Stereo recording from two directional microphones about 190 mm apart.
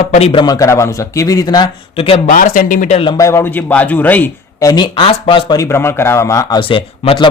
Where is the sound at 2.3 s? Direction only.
45° left (ahead or behind).